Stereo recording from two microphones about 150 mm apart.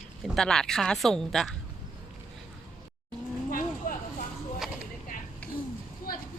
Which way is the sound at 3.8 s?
65° left (ahead or behind).